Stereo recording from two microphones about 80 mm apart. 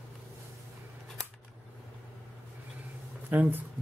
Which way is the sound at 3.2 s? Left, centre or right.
Right.